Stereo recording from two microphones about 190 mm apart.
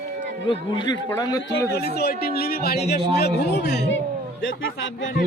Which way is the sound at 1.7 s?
60° left (ahead or behind).